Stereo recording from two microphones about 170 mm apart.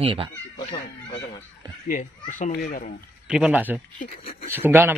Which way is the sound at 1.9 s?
50° left (ahead or behind).